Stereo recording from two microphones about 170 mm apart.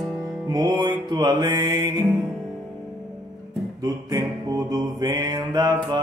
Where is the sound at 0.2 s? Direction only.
25° right (ahead or behind).